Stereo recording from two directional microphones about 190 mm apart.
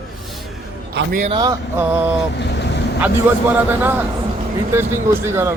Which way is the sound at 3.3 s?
10° right (ahead or behind).